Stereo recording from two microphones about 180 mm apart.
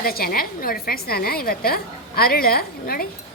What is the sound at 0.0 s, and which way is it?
A woman's voice, 55° left (ahead or behind).